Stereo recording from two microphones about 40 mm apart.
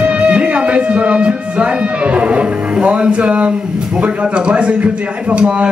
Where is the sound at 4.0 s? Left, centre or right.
Right.